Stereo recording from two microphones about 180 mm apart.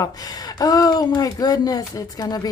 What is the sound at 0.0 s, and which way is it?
Speech, 20° left (ahead or behind).